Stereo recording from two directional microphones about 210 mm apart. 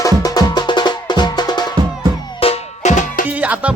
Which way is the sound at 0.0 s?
15° left (ahead or behind).